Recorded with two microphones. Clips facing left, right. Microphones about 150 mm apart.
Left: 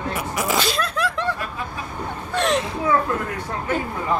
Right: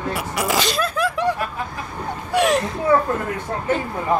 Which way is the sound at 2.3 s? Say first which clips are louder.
Right 3 dB; 10° right (ahead or behind).